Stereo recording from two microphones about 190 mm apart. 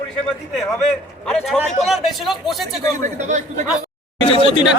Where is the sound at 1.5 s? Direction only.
Centre (ahead or behind).